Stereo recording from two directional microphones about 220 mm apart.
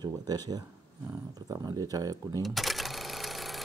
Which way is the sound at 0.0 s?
20° right (ahead or behind).